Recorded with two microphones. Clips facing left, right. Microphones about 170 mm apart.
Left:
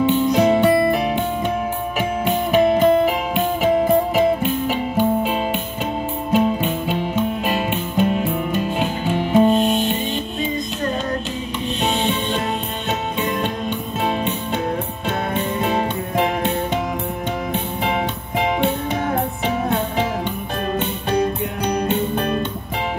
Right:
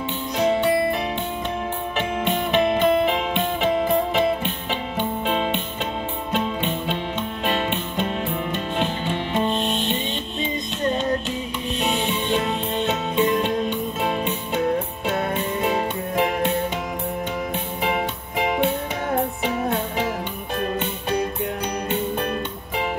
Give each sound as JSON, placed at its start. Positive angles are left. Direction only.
{"t": 0.4, "sound": "music", "side_deg": 50}
{"t": 2.0, "sound": "music", "side_deg": 5}
{"t": 2.6, "sound": "music", "side_deg": 45}
{"t": 3.1, "sound": "music", "side_deg": 5}
{"t": 11.8, "sound": "music", "side_deg": 25}